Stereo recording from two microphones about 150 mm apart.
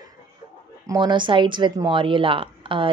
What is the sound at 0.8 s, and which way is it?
Speech, 30° right (ahead or behind).